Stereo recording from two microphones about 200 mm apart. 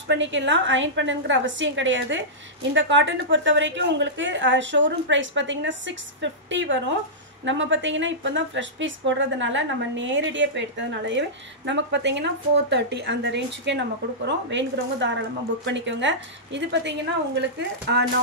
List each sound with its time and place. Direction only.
0.1 s a woman's voice: 65° right (ahead or behind)